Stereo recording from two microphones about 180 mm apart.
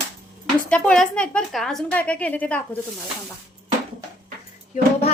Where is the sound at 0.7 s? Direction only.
5° left (ahead or behind).